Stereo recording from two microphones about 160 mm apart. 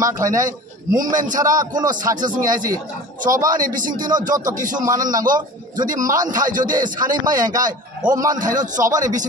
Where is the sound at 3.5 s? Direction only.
55° right (ahead or behind).